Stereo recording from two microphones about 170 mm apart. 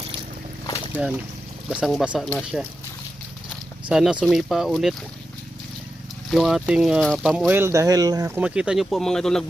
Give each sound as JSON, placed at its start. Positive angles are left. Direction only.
{"t": 0.9, "sound": "speech", "side_deg": -10}
{"t": 6.3, "sound": "speech", "side_deg": 0}
{"t": 8.4, "sound": "speech", "side_deg": -5}